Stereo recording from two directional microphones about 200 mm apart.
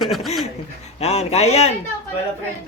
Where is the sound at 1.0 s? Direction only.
30° left (ahead or behind).